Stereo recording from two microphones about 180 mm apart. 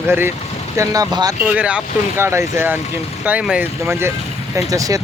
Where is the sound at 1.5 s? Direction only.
5° right (ahead or behind).